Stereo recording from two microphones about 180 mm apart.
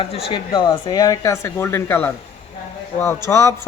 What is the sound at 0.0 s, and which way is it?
Speech, 30° left (ahead or behind).